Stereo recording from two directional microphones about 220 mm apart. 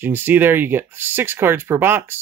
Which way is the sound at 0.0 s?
10° right (ahead or behind).